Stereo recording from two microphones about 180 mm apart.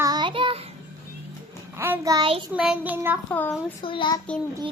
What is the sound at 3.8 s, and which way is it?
Child singing, 30° left (ahead or behind).